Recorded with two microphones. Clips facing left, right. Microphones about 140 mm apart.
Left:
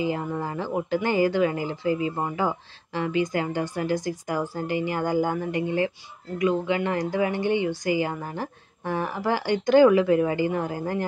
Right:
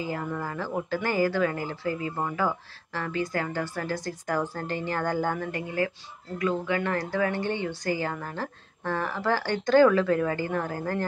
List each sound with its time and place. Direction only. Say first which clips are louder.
0.0 s speech: left 4 dB; 20° left (ahead or behind)